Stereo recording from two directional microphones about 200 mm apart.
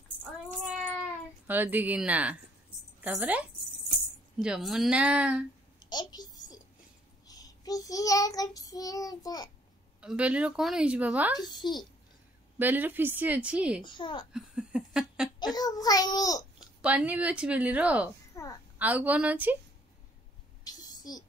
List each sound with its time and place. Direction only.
1.5 s a woman's voice: 10° right (ahead or behind)
5.8 s a sound: 20° left (ahead or behind)
7.2 s child singing: 20° left (ahead or behind)
9.9 s a woman's voice: 5° right (ahead or behind)
11.3 s a child's voice: 20° left (ahead or behind)
12.5 s a woman's voice: 10° right (ahead or behind)
13.8 s a child's voice: 25° left (ahead or behind)
14.3 s a sound: 5° right (ahead or behind)
15.3 s a child's voice: 20° left (ahead or behind)
16.5 s speech: 5° right (ahead or behind)
18.3 s a sound: 15° left (ahead or behind)
18.8 s a woman's voice: 5° right (ahead or behind)
20.6 s a sound: 20° left (ahead or behind)